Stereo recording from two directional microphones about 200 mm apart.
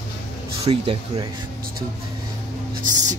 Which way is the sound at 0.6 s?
25° right (ahead or behind).